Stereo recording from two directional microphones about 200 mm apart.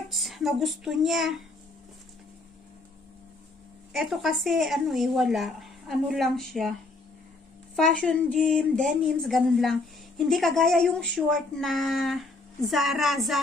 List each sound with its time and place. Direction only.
0.1 s a woman's voice: centre (ahead or behind)
3.9 s a woman's voice: centre (ahead or behind)
8.0 s a woman's voice: 5° left (ahead or behind)